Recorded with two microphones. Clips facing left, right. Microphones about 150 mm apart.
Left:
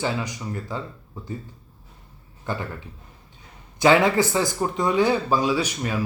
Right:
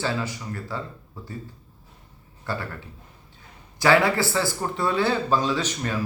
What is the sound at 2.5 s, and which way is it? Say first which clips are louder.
Speech: left 1 dB; 20° left (ahead or behind).